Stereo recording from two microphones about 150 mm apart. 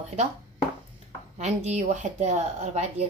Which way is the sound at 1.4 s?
50° right (ahead or behind).